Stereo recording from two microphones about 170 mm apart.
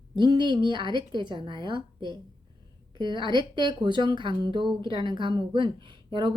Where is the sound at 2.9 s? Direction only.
25° right (ahead or behind).